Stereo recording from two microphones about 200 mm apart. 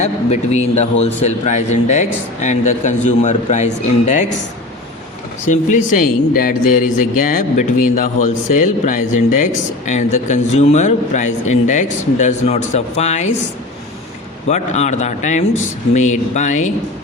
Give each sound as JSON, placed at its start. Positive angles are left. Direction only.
{"t": 0.0, "sound": "a man's voice", "side_deg": 35}
{"t": 5.5, "sound": "a man's voice", "side_deg": 40}
{"t": 14.4, "sound": "a man's voice", "side_deg": 35}